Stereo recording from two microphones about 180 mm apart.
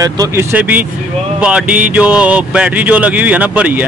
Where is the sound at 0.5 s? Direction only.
10° right (ahead or behind).